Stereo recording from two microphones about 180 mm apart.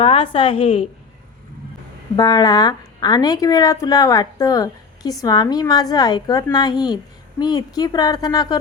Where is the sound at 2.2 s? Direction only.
20° left (ahead or behind).